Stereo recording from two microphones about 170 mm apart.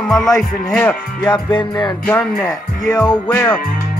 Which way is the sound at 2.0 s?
10° left (ahead or behind).